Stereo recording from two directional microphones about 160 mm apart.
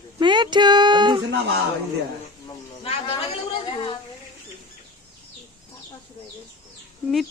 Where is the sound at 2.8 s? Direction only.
35° left (ahead or behind).